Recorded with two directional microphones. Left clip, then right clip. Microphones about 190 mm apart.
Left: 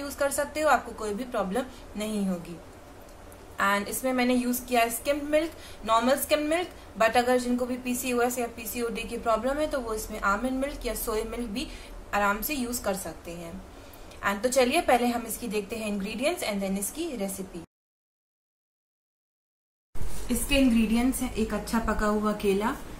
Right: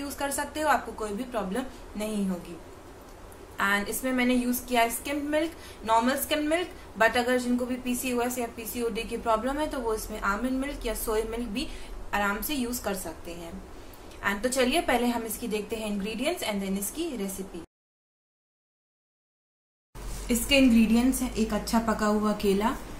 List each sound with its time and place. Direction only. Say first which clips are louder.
0.2 s a woman's voice: left 4 dB; 5° left (ahead or behind)
3.5 s a woman's voice: left 1 dB; 5° left (ahead or behind)
14.2 s a woman's voice: left 2 dB; 5° left (ahead or behind)
20.9 s a woman's voice: right 1 dB; 25° right (ahead or behind)